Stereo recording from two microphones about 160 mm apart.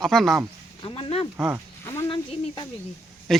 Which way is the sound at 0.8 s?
35° left (ahead or behind).